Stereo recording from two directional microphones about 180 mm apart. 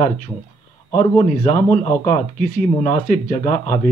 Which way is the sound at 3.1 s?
50° left (ahead or behind).